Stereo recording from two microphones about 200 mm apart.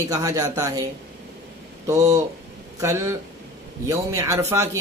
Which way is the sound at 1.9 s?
15° right (ahead or behind).